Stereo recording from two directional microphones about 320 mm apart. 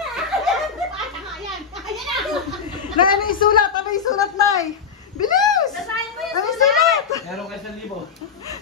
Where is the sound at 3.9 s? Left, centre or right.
Centre.